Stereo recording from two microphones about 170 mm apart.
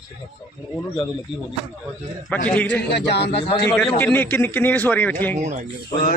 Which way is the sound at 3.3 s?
30° left (ahead or behind).